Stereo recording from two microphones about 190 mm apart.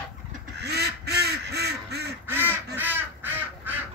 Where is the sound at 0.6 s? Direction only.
60° right (ahead or behind).